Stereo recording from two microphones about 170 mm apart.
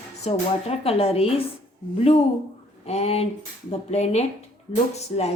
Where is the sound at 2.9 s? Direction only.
40° left (ahead or behind).